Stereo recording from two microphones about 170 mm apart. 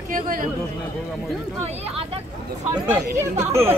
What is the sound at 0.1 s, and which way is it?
Speech, 55° right (ahead or behind).